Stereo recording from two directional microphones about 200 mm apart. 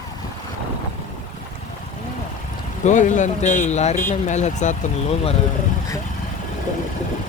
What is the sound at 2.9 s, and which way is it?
Speech, 40° left (ahead or behind).